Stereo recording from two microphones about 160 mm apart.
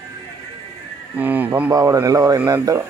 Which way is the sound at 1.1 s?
10° right (ahead or behind).